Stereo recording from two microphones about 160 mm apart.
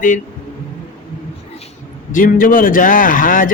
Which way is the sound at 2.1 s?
60° left (ahead or behind).